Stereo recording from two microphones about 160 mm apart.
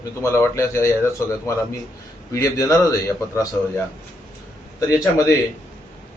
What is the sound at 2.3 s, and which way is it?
Speech, 20° left (ahead or behind).